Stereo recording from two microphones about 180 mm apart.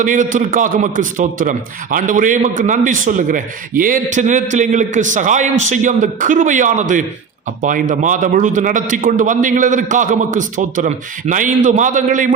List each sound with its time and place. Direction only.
0.0 s a man's voice: 45° right (ahead or behind)